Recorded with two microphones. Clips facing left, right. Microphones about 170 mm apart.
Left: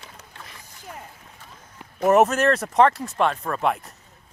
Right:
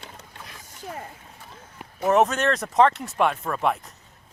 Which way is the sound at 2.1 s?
5° left (ahead or behind).